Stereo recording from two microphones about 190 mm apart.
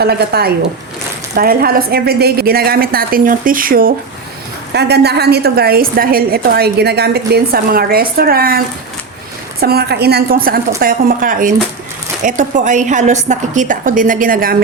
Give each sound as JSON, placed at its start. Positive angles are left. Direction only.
{"t": 0.0, "sound": "a woman's voice", "side_deg": -55}